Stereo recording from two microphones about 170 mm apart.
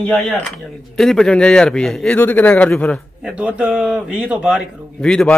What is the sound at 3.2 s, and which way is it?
Speech, 5° right (ahead or behind).